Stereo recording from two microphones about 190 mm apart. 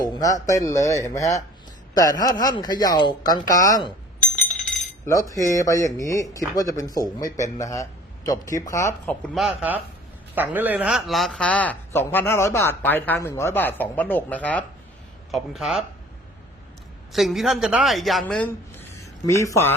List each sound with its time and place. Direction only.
0.0 s a man's voice: 20° left (ahead or behind)
5.0 s a man's voice: 15° left (ahead or behind)
9.3 s a man's voice: 5° right (ahead or behind)
17.1 s speech: centre (ahead or behind); by 19.7 s 15° left (ahead or behind)